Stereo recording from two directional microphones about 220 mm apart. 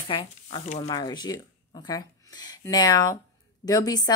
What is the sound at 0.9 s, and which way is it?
A woman's voice, 20° left (ahead or behind).